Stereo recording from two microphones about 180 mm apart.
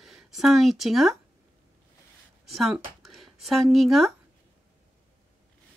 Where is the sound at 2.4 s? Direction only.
Centre (ahead or behind).